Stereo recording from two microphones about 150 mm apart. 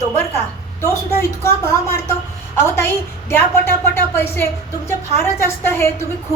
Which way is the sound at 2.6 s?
15° left (ahead or behind).